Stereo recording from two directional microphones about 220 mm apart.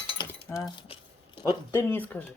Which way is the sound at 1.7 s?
10° left (ahead or behind).